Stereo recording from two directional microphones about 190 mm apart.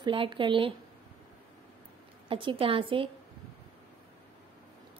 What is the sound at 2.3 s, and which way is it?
Speech, 25° right (ahead or behind).